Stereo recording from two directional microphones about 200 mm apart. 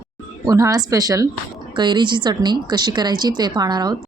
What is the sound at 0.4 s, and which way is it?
Speech, 15° right (ahead or behind).